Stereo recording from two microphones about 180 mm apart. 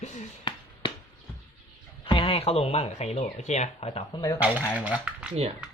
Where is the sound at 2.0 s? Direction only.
30° left (ahead or behind).